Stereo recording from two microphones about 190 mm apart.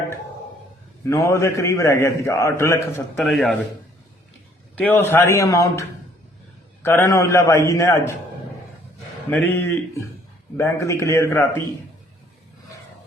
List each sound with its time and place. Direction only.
1.0 s a man's voice: 15° left (ahead or behind)
3.2 s a man's voice: centre (ahead or behind)
4.7 s a man's voice: 10° left (ahead or behind)
6.8 s a man's voice: 15° left (ahead or behind)
9.3 s a man's voice: 10° left (ahead or behind)